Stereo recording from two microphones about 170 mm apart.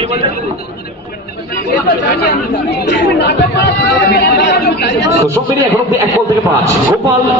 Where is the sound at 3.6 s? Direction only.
75° left (ahead or behind).